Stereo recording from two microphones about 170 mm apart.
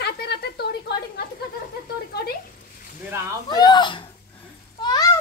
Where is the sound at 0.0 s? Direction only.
70° left (ahead or behind).